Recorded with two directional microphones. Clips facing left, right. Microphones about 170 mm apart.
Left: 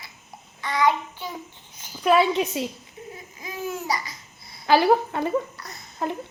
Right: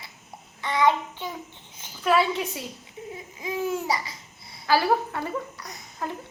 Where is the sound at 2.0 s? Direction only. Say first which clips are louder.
Left 3 dB; 20° left (ahead or behind).